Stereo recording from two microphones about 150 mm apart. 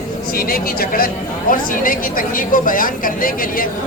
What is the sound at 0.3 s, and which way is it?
A man's voice, 80° left.